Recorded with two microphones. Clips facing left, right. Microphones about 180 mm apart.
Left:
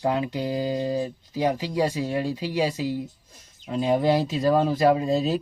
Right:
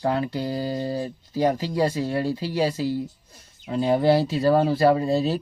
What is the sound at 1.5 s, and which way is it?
Speech, 40° right (ahead or behind).